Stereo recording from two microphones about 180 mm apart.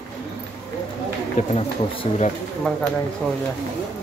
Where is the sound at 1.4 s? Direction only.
40° left (ahead or behind).